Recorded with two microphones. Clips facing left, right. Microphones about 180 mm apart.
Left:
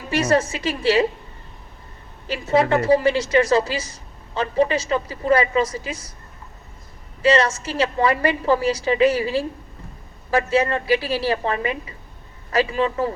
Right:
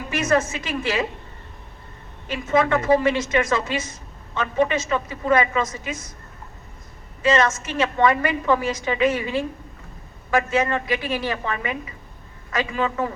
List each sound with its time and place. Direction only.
0.1 s a woman's voice: 30° left (ahead or behind)
2.2 s a woman's voice: 30° left (ahead or behind)
7.2 s a woman's voice: 30° left (ahead or behind)